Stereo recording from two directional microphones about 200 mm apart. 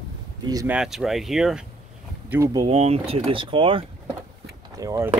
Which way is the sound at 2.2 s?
10° right (ahead or behind).